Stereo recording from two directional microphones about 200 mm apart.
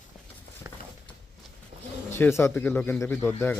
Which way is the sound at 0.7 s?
10° right (ahead or behind).